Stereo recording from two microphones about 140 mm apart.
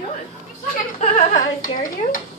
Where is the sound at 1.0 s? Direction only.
65° left (ahead or behind).